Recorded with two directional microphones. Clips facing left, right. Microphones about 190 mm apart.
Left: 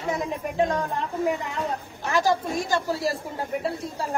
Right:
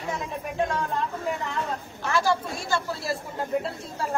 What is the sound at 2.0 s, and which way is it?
Speech, 15° left (ahead or behind).